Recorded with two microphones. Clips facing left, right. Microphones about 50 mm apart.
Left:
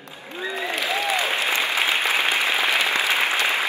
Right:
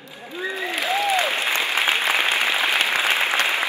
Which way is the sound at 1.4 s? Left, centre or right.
Right.